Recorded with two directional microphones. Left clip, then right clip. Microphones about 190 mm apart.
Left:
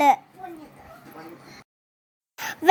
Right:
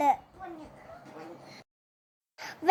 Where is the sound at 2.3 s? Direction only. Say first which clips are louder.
Left 9 dB; 15° left (ahead or behind).